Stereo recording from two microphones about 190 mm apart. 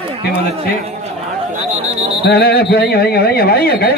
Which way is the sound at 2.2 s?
55° left (ahead or behind).